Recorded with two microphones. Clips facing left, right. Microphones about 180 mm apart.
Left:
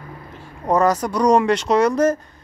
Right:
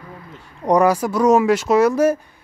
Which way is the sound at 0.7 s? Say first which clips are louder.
Right 2 dB; 10° right (ahead or behind).